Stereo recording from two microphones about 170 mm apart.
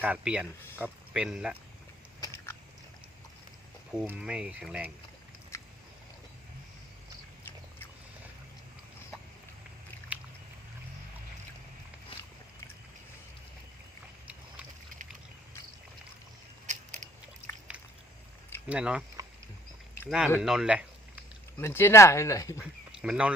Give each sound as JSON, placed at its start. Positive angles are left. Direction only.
{"t": 0.0, "sound": "speech", "side_deg": -5}
{"t": 2.2, "sound": "biting", "side_deg": 15}
{"t": 3.9, "sound": "speech", "side_deg": -5}
{"t": 5.5, "sound": "biting", "side_deg": 15}
{"t": 10.1, "sound": "a sound", "side_deg": -10}
{"t": 16.6, "sound": "a sound", "side_deg": -45}
{"t": 17.7, "sound": "a sound", "side_deg": -5}
{"t": 18.7, "sound": "speech", "side_deg": -5}
{"t": 20.1, "sound": "speech", "side_deg": -5}
{"t": 20.4, "sound": "a sound", "side_deg": -5}
{"t": 21.6, "sound": "speech", "side_deg": 15}
{"t": 22.6, "sound": "speech", "side_deg": -5}